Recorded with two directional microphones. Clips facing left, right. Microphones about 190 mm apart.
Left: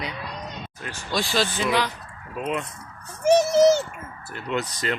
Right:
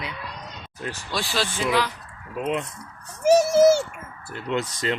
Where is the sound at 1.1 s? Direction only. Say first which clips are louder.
Left 4 dB; 5° right (ahead or behind).